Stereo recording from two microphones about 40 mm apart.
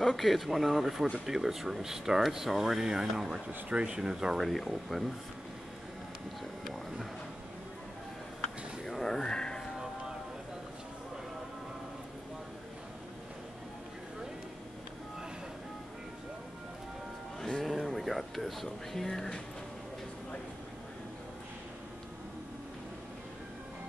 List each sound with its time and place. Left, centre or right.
0.0 s speech: centre
3.4 s speech: right
4.4 s speech: centre
6.6 s music: centre
8.8 s music: centre
17.4 s music: centre
17.6 s a sound: centre